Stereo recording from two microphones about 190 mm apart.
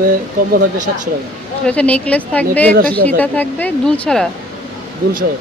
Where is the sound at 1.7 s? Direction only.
5° left (ahead or behind).